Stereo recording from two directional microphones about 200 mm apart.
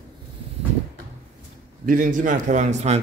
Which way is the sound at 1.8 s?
40° right (ahead or behind).